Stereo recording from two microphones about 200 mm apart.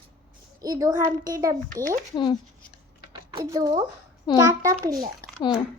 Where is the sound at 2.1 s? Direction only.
25° left (ahead or behind).